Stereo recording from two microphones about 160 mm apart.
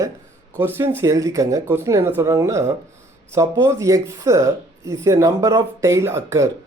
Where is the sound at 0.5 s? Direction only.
15° right (ahead or behind).